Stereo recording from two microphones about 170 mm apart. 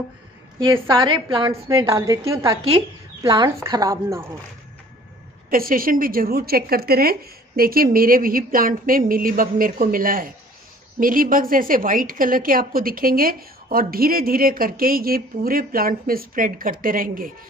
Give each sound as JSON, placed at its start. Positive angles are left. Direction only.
{"t": 0.8, "sound": "a woman's voice", "side_deg": -25}
{"t": 5.5, "sound": "a woman's voice", "side_deg": -55}